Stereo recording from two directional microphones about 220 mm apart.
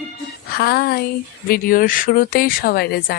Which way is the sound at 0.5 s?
45° left (ahead or behind).